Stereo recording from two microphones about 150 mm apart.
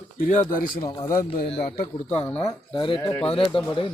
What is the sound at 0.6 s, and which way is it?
Speech, 30° left (ahead or behind).